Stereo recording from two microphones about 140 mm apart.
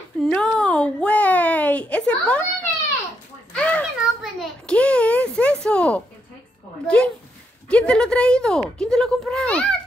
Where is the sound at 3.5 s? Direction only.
10° left (ahead or behind).